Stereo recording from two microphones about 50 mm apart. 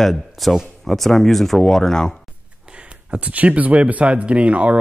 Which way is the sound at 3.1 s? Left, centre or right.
Right.